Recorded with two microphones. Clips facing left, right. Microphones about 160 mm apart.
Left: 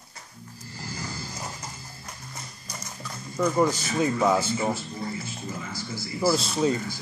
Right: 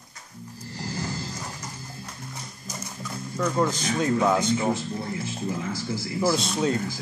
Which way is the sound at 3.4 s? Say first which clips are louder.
Left 2 dB; 10° left (ahead or behind).